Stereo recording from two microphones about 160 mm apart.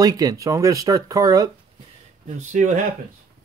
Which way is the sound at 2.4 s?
50° right (ahead or behind).